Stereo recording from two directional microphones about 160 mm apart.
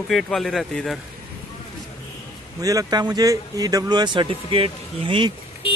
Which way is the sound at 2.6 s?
25° right (ahead or behind).